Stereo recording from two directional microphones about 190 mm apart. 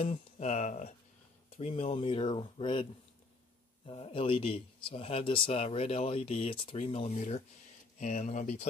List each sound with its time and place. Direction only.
0.0 s speech: 35° left (ahead or behind)